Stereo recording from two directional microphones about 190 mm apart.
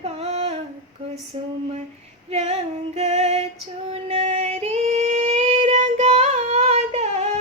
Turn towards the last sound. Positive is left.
turn(degrees=-35)  # may be behind; listen again after turning